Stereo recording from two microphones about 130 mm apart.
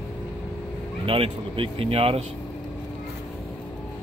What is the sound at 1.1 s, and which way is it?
Speech, 45° right (ahead or behind).